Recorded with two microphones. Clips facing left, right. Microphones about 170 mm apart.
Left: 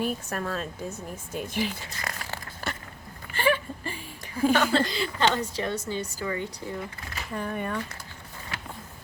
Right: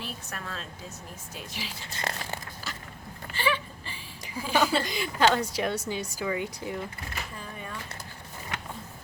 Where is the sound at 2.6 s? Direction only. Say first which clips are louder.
Left 4 dB; 55° left (ahead or behind).